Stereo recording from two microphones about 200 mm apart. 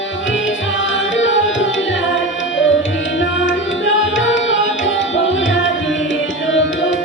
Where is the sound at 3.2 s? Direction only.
70° left (ahead or behind).